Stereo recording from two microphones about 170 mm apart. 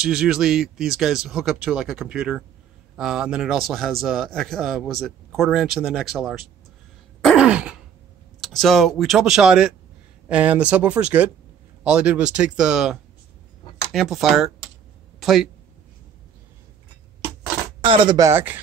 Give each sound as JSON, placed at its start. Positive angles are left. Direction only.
{"t": 0.0, "sound": "a man's voice", "side_deg": -5}
{"t": 7.2, "sound": "throat clearing", "side_deg": -5}
{"t": 8.4, "sound": "a man's voice", "side_deg": 0}
{"t": 17.8, "sound": "speech", "side_deg": -30}